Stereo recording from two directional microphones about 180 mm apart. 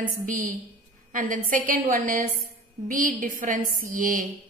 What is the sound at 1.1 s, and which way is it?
A woman's voice, 50° right (ahead or behind).